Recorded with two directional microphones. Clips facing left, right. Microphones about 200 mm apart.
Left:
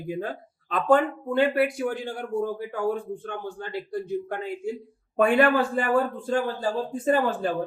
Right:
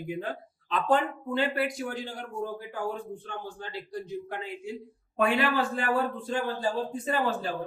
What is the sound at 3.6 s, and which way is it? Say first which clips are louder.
A man's voice: left 6 dB; 55° left (ahead or behind).